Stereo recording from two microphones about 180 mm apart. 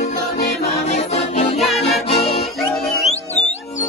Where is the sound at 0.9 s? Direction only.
35° left (ahead or behind).